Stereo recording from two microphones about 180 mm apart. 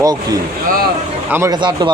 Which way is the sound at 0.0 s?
20° right (ahead or behind).